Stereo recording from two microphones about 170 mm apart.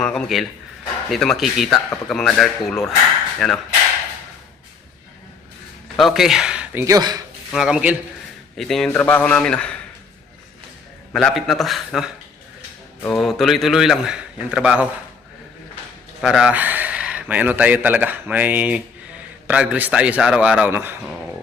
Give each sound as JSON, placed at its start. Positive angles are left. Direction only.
{"t": 0.0, "sound": "a man's voice", "side_deg": 5}
{"t": 6.0, "sound": "speech", "side_deg": 0}
{"t": 6.8, "sound": "speech", "side_deg": -20}
{"t": 7.5, "sound": "a man's voice", "side_deg": -5}
{"t": 11.1, "sound": "a man's voice", "side_deg": 0}
{"t": 16.2, "sound": "speech", "side_deg": -5}